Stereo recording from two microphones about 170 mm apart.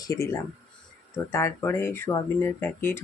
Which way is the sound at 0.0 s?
20° left (ahead or behind).